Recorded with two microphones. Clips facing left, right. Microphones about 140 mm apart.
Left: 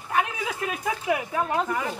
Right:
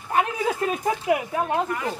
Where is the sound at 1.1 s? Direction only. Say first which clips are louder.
Right 1 dB; 20° right (ahead or behind).